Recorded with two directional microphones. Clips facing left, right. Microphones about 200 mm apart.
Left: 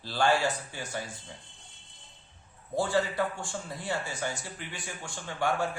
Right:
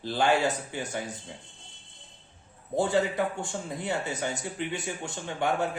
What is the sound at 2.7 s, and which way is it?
Speech, 20° right (ahead or behind).